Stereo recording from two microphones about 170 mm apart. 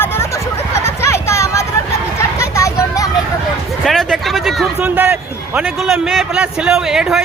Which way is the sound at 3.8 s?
Centre (ahead or behind).